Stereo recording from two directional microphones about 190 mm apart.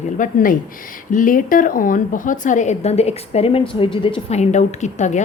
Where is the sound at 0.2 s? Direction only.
45° left (ahead or behind).